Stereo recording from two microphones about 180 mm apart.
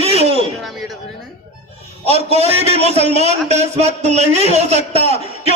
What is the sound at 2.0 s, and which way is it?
A man's voice, 35° right (ahead or behind).